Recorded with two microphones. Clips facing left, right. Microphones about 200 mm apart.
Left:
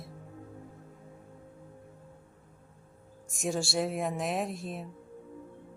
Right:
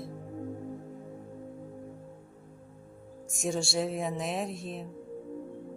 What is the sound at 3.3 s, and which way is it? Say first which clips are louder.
Speech: even; centre (ahead or behind).